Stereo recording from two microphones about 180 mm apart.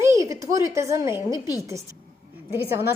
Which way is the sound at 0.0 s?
15° right (ahead or behind).